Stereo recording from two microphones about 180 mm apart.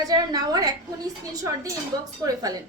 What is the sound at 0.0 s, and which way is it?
A woman's voice, 20° right (ahead or behind).